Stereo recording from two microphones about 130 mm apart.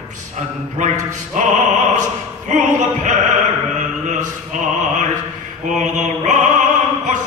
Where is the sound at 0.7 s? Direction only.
70° right (ahead or behind).